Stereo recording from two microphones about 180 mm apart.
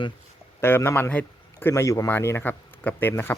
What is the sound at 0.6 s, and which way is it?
Speech, 15° left (ahead or behind).